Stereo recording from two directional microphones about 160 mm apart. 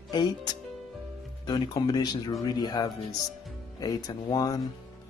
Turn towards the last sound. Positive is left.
turn(degrees=25)  # may be behind; listen again after turning